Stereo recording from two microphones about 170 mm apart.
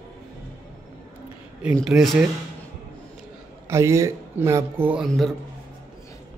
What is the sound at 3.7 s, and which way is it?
Speech, 15° right (ahead or behind).